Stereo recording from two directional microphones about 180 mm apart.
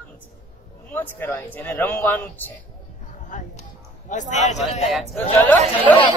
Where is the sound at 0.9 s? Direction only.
10° left (ahead or behind).